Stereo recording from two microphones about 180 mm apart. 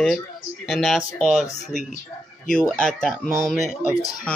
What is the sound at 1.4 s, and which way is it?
Speech, 40° left (ahead or behind).